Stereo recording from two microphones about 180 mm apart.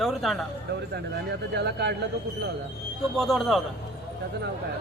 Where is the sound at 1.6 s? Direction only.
70° right (ahead or behind).